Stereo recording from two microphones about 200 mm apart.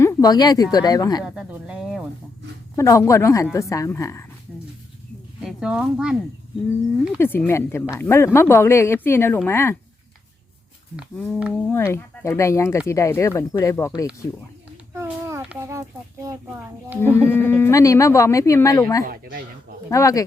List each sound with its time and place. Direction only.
0.0 s speech: 15° left (ahead or behind)
1.2 s a sound: 5° right (ahead or behind)
2.7 s speech: 15° left (ahead or behind)
5.4 s speech: 5° right (ahead or behind)
7.2 s speech: 10° left (ahead or behind)
10.9 s a sound: 5° right (ahead or behind)
11.7 s speech: 10° left (ahead or behind)
14.9 s a sound: 15° right (ahead or behind)
17.2 s speech: 10° left (ahead or behind)